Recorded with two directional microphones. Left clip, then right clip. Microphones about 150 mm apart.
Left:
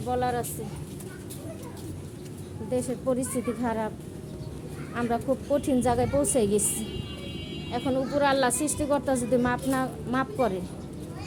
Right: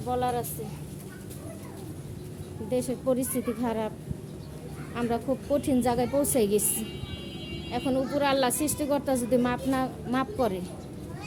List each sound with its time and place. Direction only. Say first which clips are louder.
0.1 s speech: left 1 dB; 5° right (ahead or behind)
2.6 s a woman's voice: even; 20° right (ahead or behind)
4.9 s a woman's voice: left 2 dB; 10° right (ahead or behind)